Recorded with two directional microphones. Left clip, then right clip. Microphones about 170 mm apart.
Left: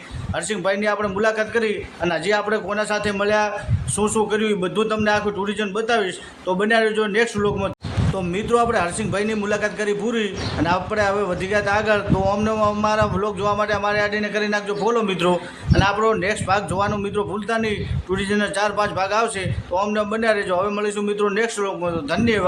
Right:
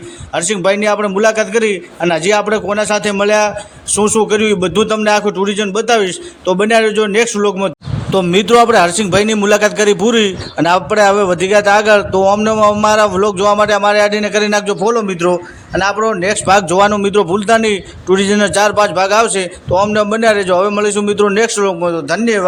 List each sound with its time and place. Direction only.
0.3 s a man's voice: 40° right (ahead or behind)
8.1 s a man's voice: 55° right (ahead or behind)
14.8 s a man's voice: 30° right (ahead or behind)
16.2 s a man's voice: 45° right (ahead or behind)